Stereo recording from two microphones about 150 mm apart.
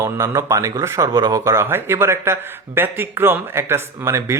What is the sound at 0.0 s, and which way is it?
Speech, 20° right (ahead or behind).